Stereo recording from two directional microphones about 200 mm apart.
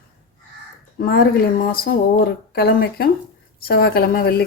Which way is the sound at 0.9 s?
50° left (ahead or behind).